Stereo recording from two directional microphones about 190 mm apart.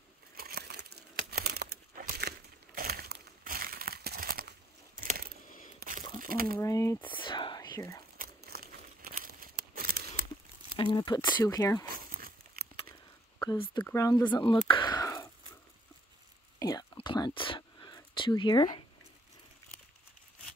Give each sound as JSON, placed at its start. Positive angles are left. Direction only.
{"t": 0.4, "sound": "crumpling", "side_deg": -55}
{"t": 5.0, "sound": "coin", "side_deg": -50}
{"t": 5.8, "sound": "a sound", "side_deg": -45}
{"t": 6.6, "sound": "speech", "side_deg": 15}
{"t": 7.2, "sound": "whispering", "side_deg": 25}
{"t": 8.2, "sound": "crumpling", "side_deg": -55}
{"t": 10.8, "sound": "speech", "side_deg": 25}
{"t": 12.1, "sound": "a sound", "side_deg": -50}
{"t": 13.4, "sound": "speech", "side_deg": 20}
{"t": 16.5, "sound": "whispering", "side_deg": 20}